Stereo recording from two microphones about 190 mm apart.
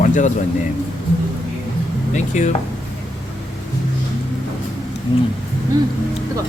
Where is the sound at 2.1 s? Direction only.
40° left (ahead or behind).